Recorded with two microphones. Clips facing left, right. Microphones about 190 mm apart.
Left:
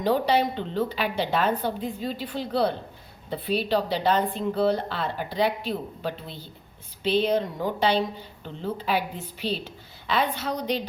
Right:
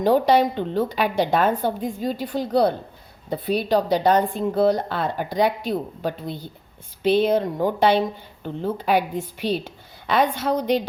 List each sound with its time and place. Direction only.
0.0 s speech: 50° right (ahead or behind)